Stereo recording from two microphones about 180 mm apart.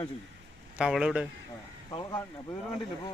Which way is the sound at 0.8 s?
5° right (ahead or behind).